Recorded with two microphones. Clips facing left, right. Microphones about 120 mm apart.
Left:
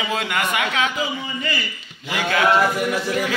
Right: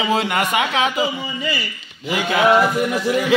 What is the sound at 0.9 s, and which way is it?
Speech, 10° right (ahead or behind).